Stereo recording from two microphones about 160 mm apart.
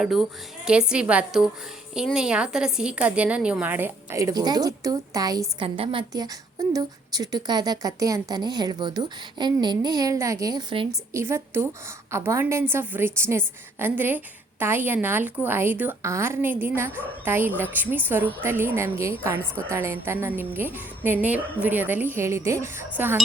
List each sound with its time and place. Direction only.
0.0 s a woman's voice: centre (ahead or behind); by 5.6 s 25° right (ahead or behind)
5.6 s a woman's voice: 35° right (ahead or behind)
11.1 s a woman's voice: 15° right (ahead or behind)